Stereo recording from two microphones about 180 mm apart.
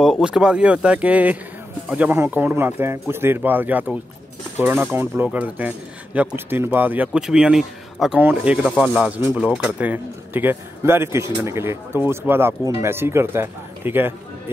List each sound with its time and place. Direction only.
0.0 s speech: 5° right (ahead or behind)